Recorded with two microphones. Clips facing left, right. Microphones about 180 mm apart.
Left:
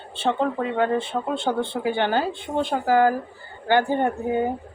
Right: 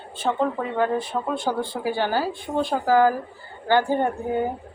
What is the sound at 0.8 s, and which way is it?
Speech, 25° left (ahead or behind).